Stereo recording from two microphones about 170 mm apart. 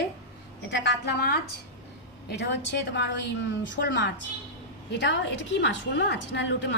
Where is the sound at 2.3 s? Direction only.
90° left.